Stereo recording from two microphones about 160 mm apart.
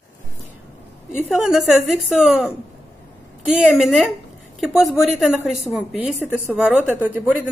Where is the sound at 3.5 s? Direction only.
Centre (ahead or behind).